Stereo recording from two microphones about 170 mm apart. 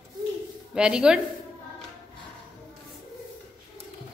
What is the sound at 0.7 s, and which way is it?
Speech, 5° right (ahead or behind).